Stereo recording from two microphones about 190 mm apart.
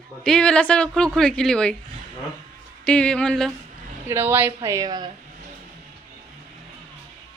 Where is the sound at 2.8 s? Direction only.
5° left (ahead or behind).